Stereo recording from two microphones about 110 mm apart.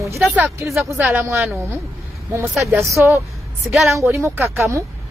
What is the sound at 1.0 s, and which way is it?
Speech, 20° right (ahead or behind).